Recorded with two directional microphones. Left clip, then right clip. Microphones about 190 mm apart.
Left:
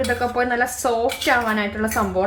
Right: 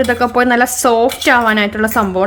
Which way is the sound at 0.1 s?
45° right (ahead or behind).